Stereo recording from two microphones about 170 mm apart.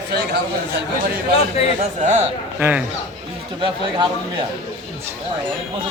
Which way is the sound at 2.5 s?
10° right (ahead or behind).